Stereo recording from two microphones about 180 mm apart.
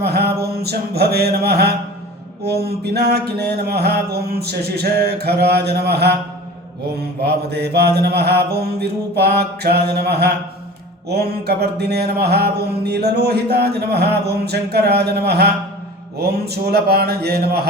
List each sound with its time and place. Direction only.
0.0 s mantra: 60° right (ahead or behind)